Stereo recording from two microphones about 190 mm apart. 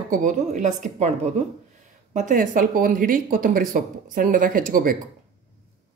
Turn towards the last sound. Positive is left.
turn(degrees=-45)  # may be behind; listen again after turning